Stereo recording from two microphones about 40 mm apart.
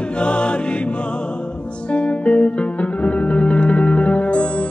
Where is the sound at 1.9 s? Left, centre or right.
Left.